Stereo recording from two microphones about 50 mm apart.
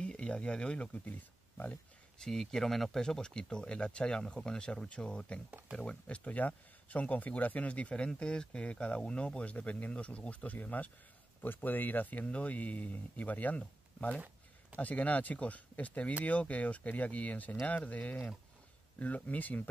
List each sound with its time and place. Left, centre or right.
0.0 s speech: centre
2.1 s speech: centre; by 19.7 s left